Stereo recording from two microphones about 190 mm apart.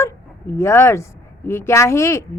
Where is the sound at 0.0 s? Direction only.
15° left (ahead or behind).